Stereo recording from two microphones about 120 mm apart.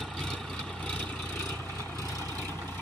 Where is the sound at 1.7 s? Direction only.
20° left (ahead or behind).